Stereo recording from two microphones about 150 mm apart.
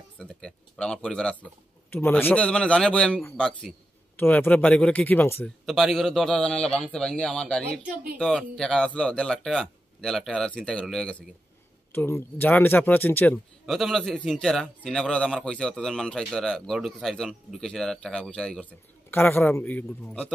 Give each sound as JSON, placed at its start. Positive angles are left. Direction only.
{"t": 0.2, "sound": "a man's voice", "side_deg": 5}
{"t": 5.7, "sound": "a man's voice", "side_deg": 0}
{"t": 7.7, "sound": "speech", "side_deg": -80}
{"t": 8.2, "sound": "a man's voice", "side_deg": 5}
{"t": 13.7, "sound": "a man's voice", "side_deg": 0}